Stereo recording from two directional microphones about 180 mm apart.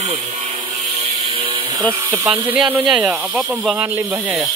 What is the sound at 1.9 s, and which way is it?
Speech, 15° right (ahead or behind).